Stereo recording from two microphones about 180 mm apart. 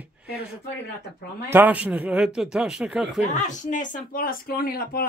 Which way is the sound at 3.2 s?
40° left (ahead or behind).